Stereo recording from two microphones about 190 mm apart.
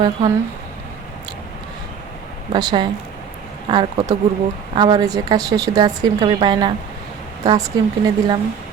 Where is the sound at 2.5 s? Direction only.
25° right (ahead or behind).